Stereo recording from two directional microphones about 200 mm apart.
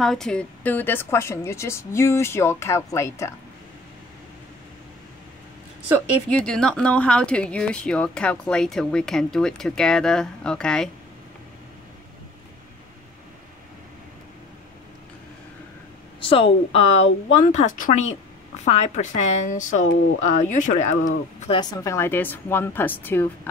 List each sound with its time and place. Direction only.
0.0 s a woman's voice: centre (ahead or behind)
6.3 s speech: 5° left (ahead or behind)
16.2 s speech: 25° left (ahead or behind)
21.5 s a woman's voice: 20° left (ahead or behind)